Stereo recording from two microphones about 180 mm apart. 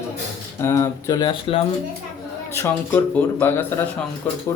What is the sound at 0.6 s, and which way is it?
Speech, 20° left (ahead or behind).